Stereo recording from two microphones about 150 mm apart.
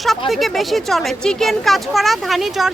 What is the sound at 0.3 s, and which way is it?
Speech, centre (ahead or behind).